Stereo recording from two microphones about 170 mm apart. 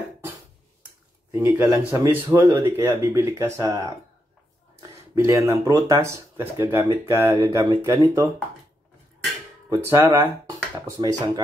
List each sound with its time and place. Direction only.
1.3 s speech: 10° right (ahead or behind)
5.1 s speech: 15° right (ahead or behind)
9.7 s speech: 15° right (ahead or behind)